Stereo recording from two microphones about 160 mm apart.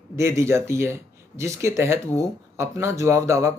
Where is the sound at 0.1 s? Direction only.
15° right (ahead or behind).